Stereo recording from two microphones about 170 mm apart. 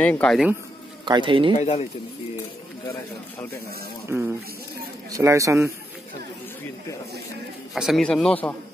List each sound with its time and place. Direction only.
0.0 s a man's voice: 5° left (ahead or behind)
1.0 s speech: 30° right (ahead or behind)
1.6 s speech: 40° left (ahead or behind)
4.1 s speech: 15° right (ahead or behind)
7.7 s a man's voice: centre (ahead or behind)